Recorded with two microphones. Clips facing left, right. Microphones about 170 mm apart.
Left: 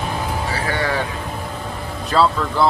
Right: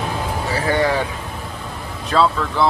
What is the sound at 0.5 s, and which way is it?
Vehicle, 20° right (ahead or behind).